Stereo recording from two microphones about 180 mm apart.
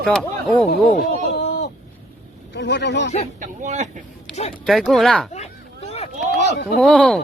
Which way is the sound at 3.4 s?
40° right (ahead or behind).